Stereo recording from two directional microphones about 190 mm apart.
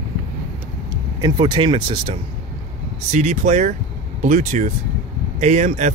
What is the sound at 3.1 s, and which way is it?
Speech, 40° right (ahead or behind).